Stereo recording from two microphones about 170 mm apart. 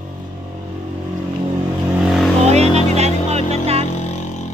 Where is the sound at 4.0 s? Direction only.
40° left (ahead or behind).